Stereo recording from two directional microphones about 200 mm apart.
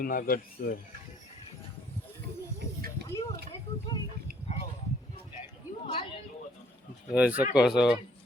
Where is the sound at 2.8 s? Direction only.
45° right (ahead or behind).